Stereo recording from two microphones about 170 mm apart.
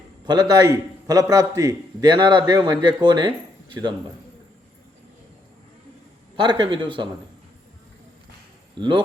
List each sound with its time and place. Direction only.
0.3 s a man's voice: 20° right (ahead or behind)
6.3 s a man's voice: 30° right (ahead or behind)
8.8 s a man's voice: 25° right (ahead or behind)